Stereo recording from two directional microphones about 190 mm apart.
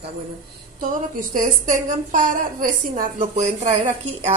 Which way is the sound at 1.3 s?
45° right (ahead or behind).